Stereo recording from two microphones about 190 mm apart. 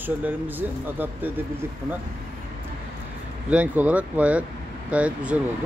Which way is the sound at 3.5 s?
10° right (ahead or behind).